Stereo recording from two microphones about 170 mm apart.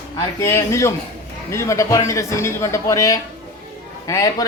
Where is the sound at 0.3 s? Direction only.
15° left (ahead or behind).